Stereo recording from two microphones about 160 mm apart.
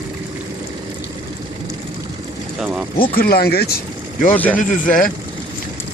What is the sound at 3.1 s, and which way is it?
Speech, 65° left (ahead or behind).